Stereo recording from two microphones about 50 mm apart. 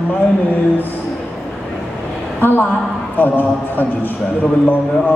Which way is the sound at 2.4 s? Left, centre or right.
Left.